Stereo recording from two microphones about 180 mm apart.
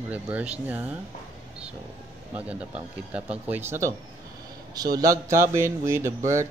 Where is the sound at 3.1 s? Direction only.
10° right (ahead or behind).